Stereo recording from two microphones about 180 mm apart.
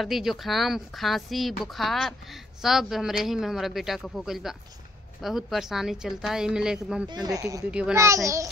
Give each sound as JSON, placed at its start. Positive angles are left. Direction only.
{"t": 0.0, "sound": "speech", "side_deg": 0}
{"t": 7.1, "sound": "speech", "side_deg": -20}
{"t": 7.7, "sound": "speech", "side_deg": -5}